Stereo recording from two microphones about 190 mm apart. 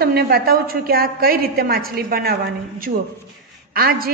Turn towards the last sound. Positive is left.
turn(degrees=-50)  # may be behind; listen again after turning